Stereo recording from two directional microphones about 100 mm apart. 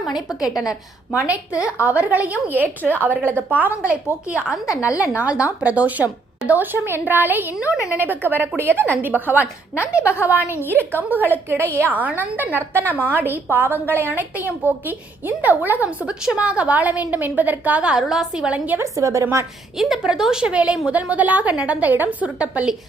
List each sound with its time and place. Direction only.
0.2 s a woman's voice: 5° right (ahead or behind)
0.6 s a woman's voice: 35° left (ahead or behind)
1.5 s a woman's voice: 15° right (ahead or behind)
18.9 s a woman's voice: 30° right (ahead or behind)
19.7 s a woman's voice: 5° right (ahead or behind)